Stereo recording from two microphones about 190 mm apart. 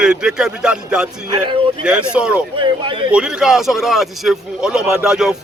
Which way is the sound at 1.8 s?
5° right (ahead or behind).